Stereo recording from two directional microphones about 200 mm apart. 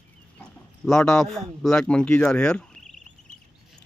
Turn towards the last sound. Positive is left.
turn(degrees=5)  # may be behind; listen again after turning